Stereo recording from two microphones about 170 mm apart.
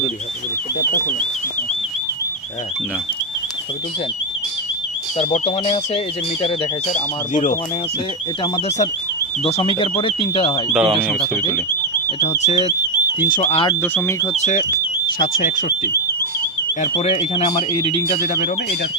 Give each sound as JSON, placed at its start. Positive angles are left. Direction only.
{"t": 5.3, "sound": "speech", "side_deg": 40}
{"t": 9.4, "sound": "speech", "side_deg": 35}
{"t": 10.7, "sound": "speech", "side_deg": 0}
{"t": 13.2, "sound": "speech", "side_deg": 55}
{"t": 13.5, "sound": "speech", "side_deg": 30}
{"t": 13.8, "sound": "speech", "side_deg": 15}
{"t": 14.3, "sound": "speech", "side_deg": 45}
{"t": 17.0, "sound": "speech", "side_deg": 35}